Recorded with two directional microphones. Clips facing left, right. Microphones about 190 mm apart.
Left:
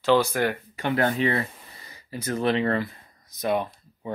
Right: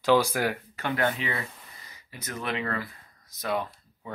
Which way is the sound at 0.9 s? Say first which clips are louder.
Left 5 dB; 35° left (ahead or behind).